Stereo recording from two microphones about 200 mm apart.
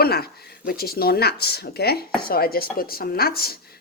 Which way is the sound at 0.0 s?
50° left (ahead or behind).